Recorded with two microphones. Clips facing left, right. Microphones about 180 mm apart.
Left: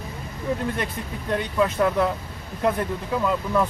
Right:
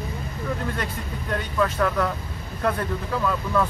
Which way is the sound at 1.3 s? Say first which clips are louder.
Left 2 dB; 20° left (ahead or behind).